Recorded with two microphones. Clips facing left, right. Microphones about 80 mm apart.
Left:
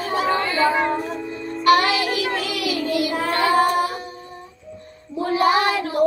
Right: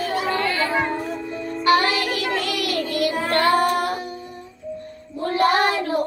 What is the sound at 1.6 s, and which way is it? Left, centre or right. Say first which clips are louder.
Music: left 2 dB; right.